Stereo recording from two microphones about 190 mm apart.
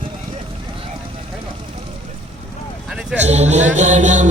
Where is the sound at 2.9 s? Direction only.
5° right (ahead or behind).